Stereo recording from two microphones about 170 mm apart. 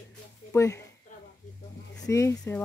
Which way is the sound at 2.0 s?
15° left (ahead or behind).